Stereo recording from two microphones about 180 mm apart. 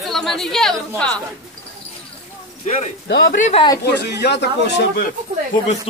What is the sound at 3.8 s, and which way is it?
Speech, 65° left (ahead or behind).